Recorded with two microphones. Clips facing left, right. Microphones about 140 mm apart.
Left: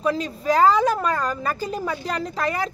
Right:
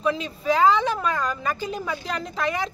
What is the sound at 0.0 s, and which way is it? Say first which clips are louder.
A man's voice: left 2 dB; 40° left (ahead or behind).